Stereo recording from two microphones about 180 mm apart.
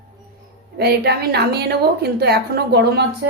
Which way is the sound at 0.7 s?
65° right (ahead or behind).